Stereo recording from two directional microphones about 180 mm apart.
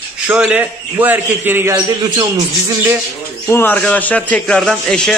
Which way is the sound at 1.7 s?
25° right (ahead or behind).